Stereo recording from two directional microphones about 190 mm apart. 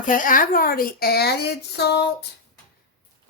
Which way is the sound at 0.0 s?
45° left (ahead or behind).